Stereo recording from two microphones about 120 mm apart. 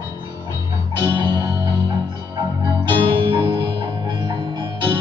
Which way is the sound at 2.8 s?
45° right (ahead or behind).